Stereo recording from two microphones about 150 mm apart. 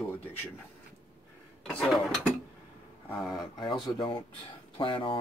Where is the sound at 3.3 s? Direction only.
30° left (ahead or behind).